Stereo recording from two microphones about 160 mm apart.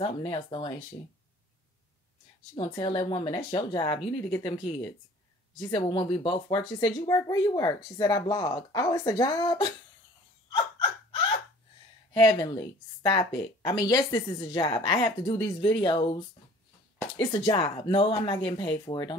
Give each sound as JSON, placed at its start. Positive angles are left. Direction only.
{"t": 0.0, "sound": "speech", "side_deg": 30}
{"t": 2.5, "sound": "speech", "side_deg": 30}
{"t": 10.5, "sound": "hiccup", "side_deg": 35}
{"t": 12.1, "sound": "speech", "side_deg": 30}